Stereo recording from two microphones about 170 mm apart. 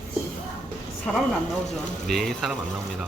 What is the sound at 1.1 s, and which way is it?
Speech, centre (ahead or behind).